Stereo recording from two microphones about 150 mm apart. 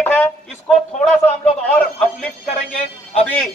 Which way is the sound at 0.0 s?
15° left (ahead or behind).